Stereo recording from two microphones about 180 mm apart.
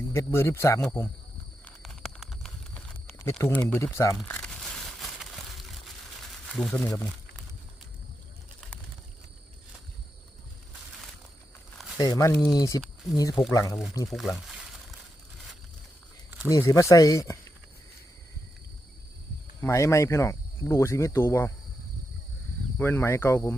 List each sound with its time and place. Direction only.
0.1 s speech: 15° left (ahead or behind)
1.6 s a sound: 5° left (ahead or behind)
2.7 s speech: 10° left (ahead or behind)
4.2 s crumpling: 5° left (ahead or behind)
6.5 s speech: 5° left (ahead or behind)
11.9 s speech: 20° left (ahead or behind)
14.1 s crumpling: centre (ahead or behind)
16.5 s speech: 20° left (ahead or behind)
19.6 s speech: 15° left (ahead or behind)
22.8 s speech: 10° left (ahead or behind)